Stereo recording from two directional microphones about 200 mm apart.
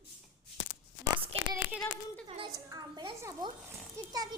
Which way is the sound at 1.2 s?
30° right (ahead or behind).